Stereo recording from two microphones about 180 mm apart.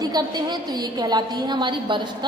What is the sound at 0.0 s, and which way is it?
A woman's voice, 20° right (ahead or behind).